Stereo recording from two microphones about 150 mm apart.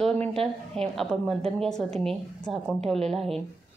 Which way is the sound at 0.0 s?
5° left (ahead or behind).